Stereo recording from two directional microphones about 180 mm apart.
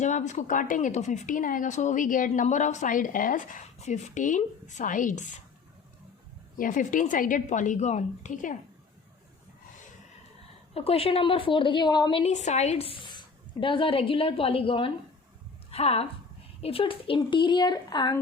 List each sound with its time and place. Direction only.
0.0 s a woman's voice: 40° left (ahead or behind)
6.6 s a woman's voice: 45° left (ahead or behind)
10.8 s speech: 30° left (ahead or behind)
12.2 s speech: 40° left (ahead or behind); by 18.2 s 25° left (ahead or behind)